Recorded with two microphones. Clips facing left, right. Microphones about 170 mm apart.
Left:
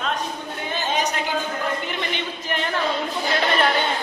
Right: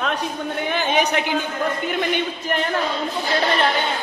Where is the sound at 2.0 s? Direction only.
50° right (ahead or behind).